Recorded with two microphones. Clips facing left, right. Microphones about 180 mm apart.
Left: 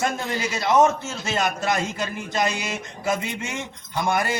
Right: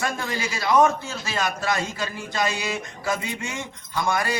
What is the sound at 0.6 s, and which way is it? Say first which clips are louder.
Speech: left 1 dB; 20° left (ahead or behind).